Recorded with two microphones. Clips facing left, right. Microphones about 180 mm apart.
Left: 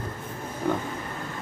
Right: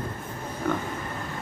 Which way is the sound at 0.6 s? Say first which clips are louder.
Left 1 dB; 15° left (ahead or behind).